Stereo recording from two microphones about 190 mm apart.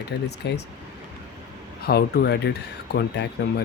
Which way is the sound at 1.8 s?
55° left (ahead or behind).